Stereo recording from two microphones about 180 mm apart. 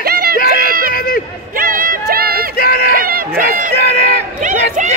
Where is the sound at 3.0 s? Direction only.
55° right (ahead or behind).